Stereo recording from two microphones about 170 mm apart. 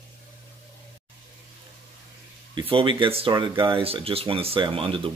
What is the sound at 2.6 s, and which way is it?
Speech, 30° right (ahead or behind).